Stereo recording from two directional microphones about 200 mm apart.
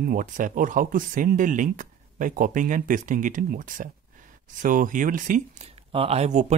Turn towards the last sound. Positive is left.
turn(degrees=-35)  # may be behind; listen again after turning